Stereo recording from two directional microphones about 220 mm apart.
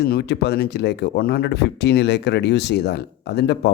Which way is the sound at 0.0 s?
45° left (ahead or behind).